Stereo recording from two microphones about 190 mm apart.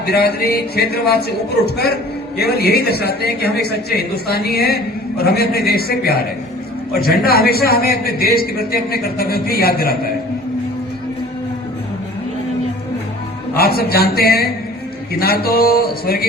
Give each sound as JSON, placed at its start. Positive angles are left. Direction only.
{"t": 0.0, "sound": "a woman's voice", "side_deg": 55}
{"t": 13.6, "sound": "a man's voice", "side_deg": 55}